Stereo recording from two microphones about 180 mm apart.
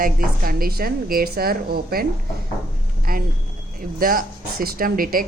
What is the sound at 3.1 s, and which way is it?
Speech, 55° right (ahead or behind).